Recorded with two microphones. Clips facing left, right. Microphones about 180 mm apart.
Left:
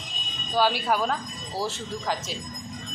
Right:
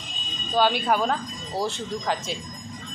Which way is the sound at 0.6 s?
5° left (ahead or behind).